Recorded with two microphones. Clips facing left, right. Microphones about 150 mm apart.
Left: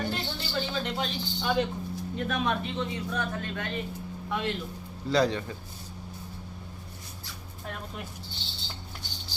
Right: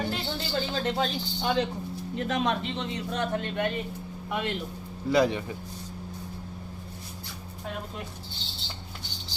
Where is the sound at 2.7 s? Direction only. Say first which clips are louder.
Even; 25° right (ahead or behind).